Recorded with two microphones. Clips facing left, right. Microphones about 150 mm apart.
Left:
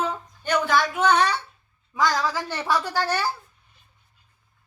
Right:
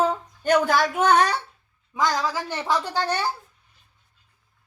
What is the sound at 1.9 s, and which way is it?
Speech, 15° right (ahead or behind).